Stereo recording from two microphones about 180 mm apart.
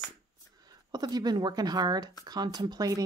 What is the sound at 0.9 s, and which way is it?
Speech, 20° right (ahead or behind).